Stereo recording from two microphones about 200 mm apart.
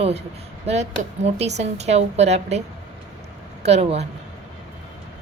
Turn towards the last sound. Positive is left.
turn(degrees=-30)  # may be behind; listen again after turning